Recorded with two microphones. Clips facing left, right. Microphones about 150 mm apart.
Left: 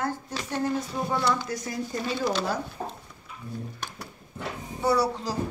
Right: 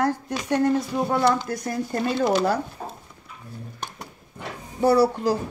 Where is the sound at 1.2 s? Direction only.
55° right (ahead or behind).